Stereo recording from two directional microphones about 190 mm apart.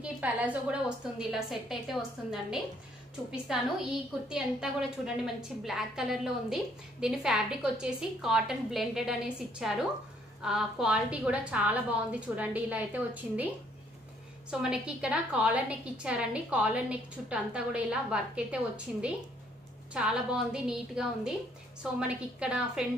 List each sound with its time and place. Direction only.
0.0 s a woman's voice: 5° right (ahead or behind)
4.3 s a woman's voice: 5° right (ahead or behind)
14.5 s a woman's voice: 5° right (ahead or behind)